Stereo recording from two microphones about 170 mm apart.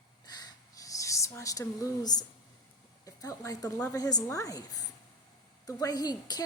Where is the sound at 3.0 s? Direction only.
20° left (ahead or behind).